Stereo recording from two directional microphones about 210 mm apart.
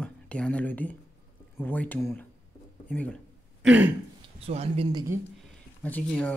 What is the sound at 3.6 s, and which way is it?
Throat clearing, 5° right (ahead or behind).